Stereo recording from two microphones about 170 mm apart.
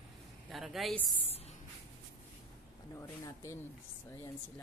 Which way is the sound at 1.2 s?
35° left (ahead or behind).